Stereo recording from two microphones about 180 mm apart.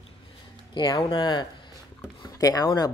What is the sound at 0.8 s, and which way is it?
Speech, 25° left (ahead or behind).